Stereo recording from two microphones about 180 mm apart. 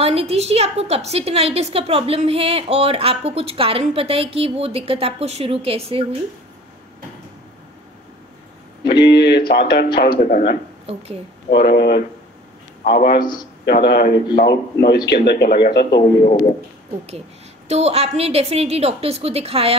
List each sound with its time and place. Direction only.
0.0 s a woman's voice: 35° right (ahead or behind)
8.8 s speech: 70° left (ahead or behind)
9.5 s a man's voice: 55° left (ahead or behind)
10.9 s a woman's voice: 35° right (ahead or behind)
11.5 s a man's voice: 60° left (ahead or behind)
13.2 s a man's voice: 25° left (ahead or behind)
13.7 s a man's voice: 60° left (ahead or behind)
17.6 s a woman's voice: 35° right (ahead or behind)